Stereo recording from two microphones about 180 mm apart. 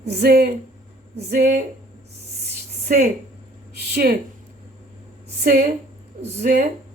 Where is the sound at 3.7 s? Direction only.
60° right (ahead or behind).